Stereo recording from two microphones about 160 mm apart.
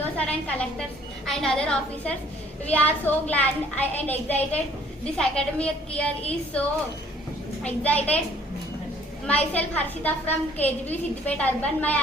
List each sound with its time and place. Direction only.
0.0 s a sound: 10° left (ahead or behind)
1.3 s a woman's voice: 5° left (ahead or behind)
7.6 s a woman's voice: 10° left (ahead or behind)
9.2 s a woman's voice: 10° left (ahead or behind)